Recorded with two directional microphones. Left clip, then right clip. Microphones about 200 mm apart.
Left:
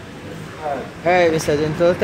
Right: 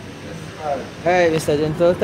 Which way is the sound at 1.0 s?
Centre (ahead or behind).